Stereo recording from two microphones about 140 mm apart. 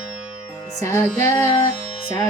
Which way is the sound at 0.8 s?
20° left (ahead or behind).